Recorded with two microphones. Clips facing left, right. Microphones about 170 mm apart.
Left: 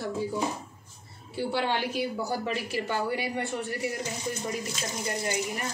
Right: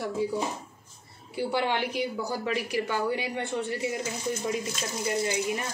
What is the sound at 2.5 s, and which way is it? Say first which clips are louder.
Speech: right 2 dB; 15° right (ahead or behind).